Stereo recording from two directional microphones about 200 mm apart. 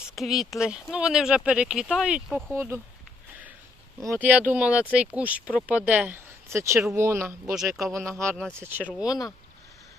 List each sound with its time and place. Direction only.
0.2 s speech: centre (ahead or behind)
4.1 s speech: 5° right (ahead or behind)
7.5 s speech: centre (ahead or behind)
8.5 s speech: 10° right (ahead or behind)
9.0 s speech: 20° left (ahead or behind)